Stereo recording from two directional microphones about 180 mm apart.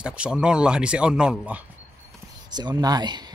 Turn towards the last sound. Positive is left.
turn(degrees=-25)  # may be behind; listen again after turning